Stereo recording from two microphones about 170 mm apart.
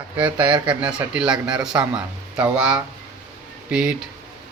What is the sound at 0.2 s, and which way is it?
A man's voice, 10° right (ahead or behind).